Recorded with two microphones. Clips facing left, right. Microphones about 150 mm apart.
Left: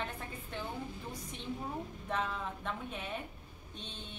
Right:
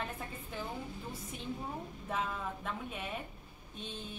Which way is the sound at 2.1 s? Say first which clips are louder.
Even; 5° right (ahead or behind).